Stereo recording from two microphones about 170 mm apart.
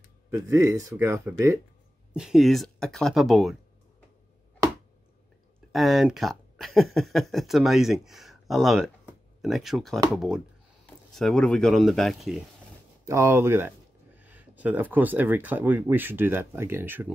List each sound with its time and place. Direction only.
0.3 s speech: 15° right (ahead or behind)
2.1 s speech: centre (ahead or behind)
5.7 s speech: centre (ahead or behind)
13.0 s speech: 15° right (ahead or behind)